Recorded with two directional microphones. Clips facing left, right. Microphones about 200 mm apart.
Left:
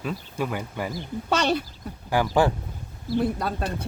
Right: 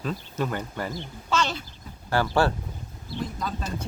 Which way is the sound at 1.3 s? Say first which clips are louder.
Left 4 dB; 60° left (ahead or behind).